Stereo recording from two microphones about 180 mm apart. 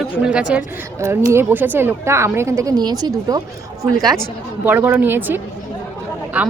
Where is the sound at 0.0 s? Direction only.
5° right (ahead or behind); by 3.4 s 20° right (ahead or behind).